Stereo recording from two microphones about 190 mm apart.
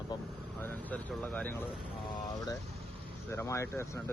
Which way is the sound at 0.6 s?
10° left (ahead or behind).